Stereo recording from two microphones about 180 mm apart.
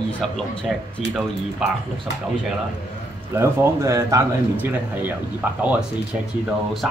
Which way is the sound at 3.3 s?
15° right (ahead or behind).